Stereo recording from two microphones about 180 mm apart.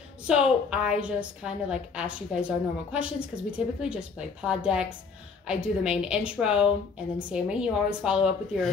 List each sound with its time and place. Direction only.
0.3 s a woman's voice: 5° right (ahead or behind)